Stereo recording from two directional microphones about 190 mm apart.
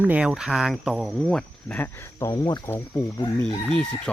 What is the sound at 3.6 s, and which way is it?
Speech, 5° left (ahead or behind).